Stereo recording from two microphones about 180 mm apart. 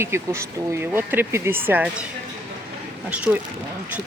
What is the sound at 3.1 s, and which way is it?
Speech, 10° right (ahead or behind).